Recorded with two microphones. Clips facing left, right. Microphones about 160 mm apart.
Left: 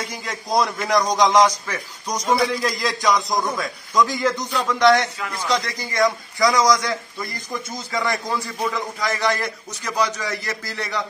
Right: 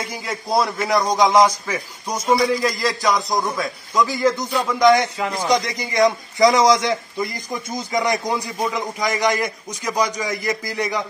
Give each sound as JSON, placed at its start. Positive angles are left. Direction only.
{"t": 0.0, "sound": "a man's voice", "side_deg": -5}